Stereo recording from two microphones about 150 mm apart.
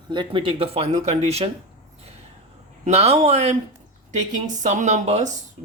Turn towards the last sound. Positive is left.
turn(degrees=-50)  # may be behind; listen again after turning